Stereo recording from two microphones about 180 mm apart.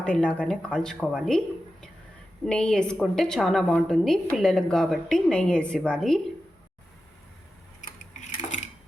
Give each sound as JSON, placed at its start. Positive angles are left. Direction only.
{"t": 0.0, "sound": "a woman's voice", "side_deg": 5}
{"t": 2.5, "sound": "a woman's voice", "side_deg": 5}
{"t": 8.4, "sound": "dishes", "side_deg": 45}